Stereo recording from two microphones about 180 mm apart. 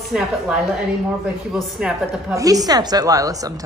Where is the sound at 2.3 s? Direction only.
20° right (ahead or behind).